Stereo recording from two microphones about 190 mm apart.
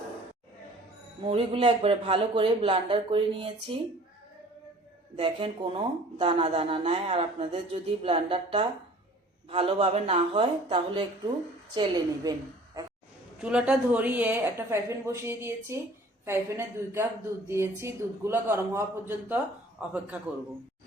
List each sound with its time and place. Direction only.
1.2 s speech: 30° right (ahead or behind)
5.1 s speech: 30° right (ahead or behind)
13.4 s a woman's voice: 5° right (ahead or behind)